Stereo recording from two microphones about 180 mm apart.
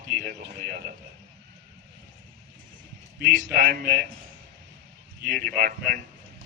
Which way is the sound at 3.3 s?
45° right (ahead or behind).